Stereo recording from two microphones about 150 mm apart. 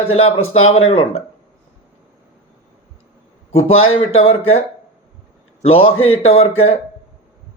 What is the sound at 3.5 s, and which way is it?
Speech, 40° left (ahead or behind).